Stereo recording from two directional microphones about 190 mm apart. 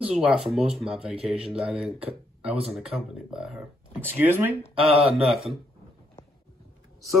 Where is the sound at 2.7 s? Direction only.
5° right (ahead or behind).